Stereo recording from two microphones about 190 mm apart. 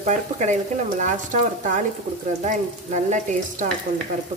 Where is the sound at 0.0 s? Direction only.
40° right (ahead or behind).